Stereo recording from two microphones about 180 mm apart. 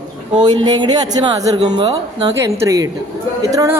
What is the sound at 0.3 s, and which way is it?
A woman's voice, 25° right (ahead or behind).